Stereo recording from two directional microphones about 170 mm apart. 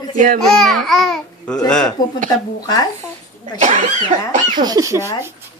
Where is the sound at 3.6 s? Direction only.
45° right (ahead or behind).